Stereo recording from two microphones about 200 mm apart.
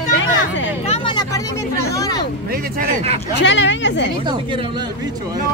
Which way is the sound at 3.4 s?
65° left (ahead or behind).